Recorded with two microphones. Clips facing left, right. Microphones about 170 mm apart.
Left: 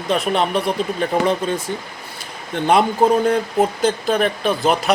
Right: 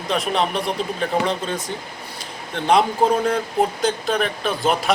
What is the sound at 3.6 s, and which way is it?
Speech, centre (ahead or behind).